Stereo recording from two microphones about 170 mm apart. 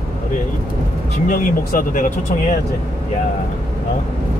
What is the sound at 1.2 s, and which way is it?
Speech, 55° left (ahead or behind).